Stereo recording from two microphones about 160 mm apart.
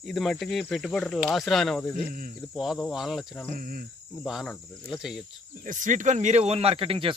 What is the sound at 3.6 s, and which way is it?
Speech, 60° right (ahead or behind).